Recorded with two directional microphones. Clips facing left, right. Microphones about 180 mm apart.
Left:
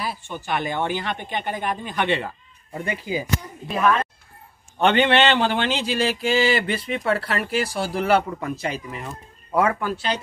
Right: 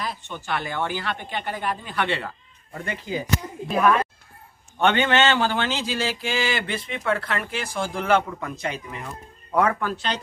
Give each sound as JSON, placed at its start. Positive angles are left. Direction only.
{"t": 0.0, "sound": "a woman's voice", "side_deg": 10}
{"t": 3.6, "sound": "speech", "side_deg": 0}
{"t": 4.7, "sound": "a woman's voice", "side_deg": 10}
{"t": 6.2, "sound": "speech", "side_deg": 35}
{"t": 8.3, "sound": "a woman's voice", "side_deg": 15}